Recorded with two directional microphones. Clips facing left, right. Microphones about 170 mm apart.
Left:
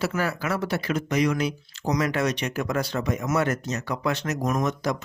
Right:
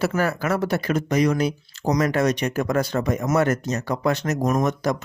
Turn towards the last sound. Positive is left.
turn(degrees=-45)  # may be behind; listen again after turning